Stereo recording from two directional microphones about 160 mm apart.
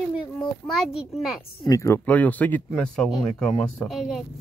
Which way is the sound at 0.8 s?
5° right (ahead or behind).